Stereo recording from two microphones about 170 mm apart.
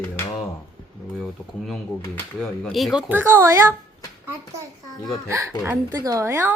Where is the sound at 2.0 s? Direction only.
10° left (ahead or behind).